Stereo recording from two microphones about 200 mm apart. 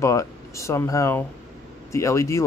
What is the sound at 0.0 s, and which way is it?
Speech, 15° left (ahead or behind).